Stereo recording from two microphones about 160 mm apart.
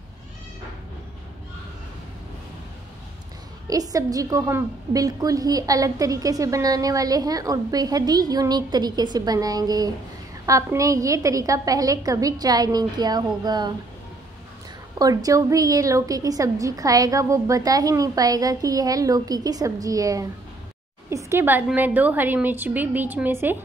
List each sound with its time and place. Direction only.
3.6 s a woman's voice: 20° right (ahead or behind)
15.0 s a woman's voice: 20° right (ahead or behind)